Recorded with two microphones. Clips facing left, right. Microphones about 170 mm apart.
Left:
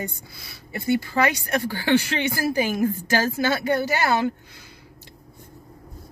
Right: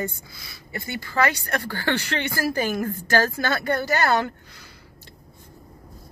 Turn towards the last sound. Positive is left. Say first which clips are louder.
# even
turn(degrees=10)  # may be behind; listen again after turning